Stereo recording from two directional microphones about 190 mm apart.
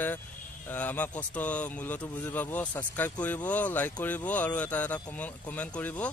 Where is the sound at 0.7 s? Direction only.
10° left (ahead or behind).